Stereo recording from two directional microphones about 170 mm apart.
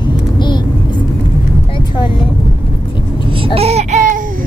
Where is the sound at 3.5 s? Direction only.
40° right (ahead or behind).